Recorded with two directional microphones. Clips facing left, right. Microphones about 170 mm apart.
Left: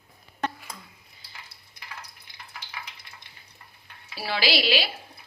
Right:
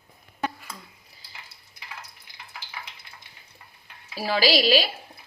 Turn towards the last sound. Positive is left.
turn(degrees=-45)  # may be behind; listen again after turning